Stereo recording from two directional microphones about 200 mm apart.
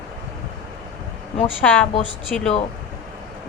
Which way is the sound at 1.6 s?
10° left (ahead or behind).